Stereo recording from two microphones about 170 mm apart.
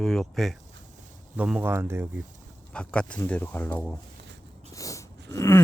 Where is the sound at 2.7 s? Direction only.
5° left (ahead or behind).